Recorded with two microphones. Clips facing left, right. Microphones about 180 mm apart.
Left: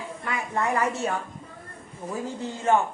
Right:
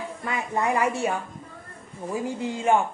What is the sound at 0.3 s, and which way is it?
A woman's voice, 20° right (ahead or behind).